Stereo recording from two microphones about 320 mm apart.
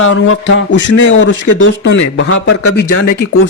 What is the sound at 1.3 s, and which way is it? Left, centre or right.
Speech, left.